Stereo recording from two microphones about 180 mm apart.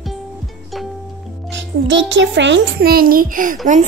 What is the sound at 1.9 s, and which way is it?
A child's voice, 90° right.